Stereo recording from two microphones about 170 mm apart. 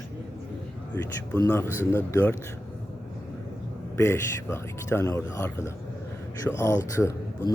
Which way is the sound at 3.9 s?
15° left (ahead or behind).